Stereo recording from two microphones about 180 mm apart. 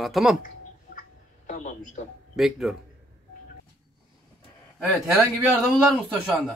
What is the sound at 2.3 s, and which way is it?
Speech, centre (ahead or behind).